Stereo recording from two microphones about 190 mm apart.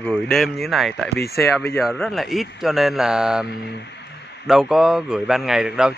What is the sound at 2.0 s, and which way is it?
A man's voice, centre (ahead or behind).